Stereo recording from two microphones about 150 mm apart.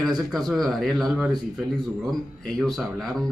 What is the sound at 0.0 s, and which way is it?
Speech, centre (ahead or behind).